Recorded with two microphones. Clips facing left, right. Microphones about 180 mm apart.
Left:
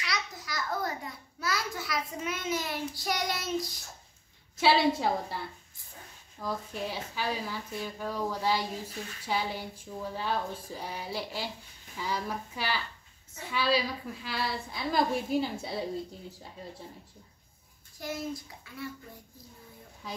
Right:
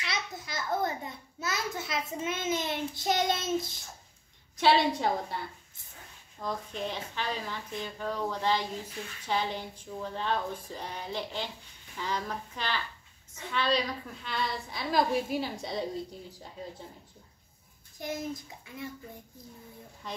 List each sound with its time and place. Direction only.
0.0 s a child's voice: 25° right (ahead or behind)
4.6 s a woman's voice: 5° left (ahead or behind)
6.4 s a woman's voice: 5° left (ahead or behind)
17.9 s a child's voice: 20° right (ahead or behind)
20.0 s a woman's voice: 5° left (ahead or behind)